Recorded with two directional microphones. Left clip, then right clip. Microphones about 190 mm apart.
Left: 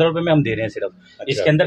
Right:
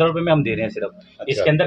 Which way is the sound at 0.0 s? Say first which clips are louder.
Left 1 dB; 35° left (ahead or behind).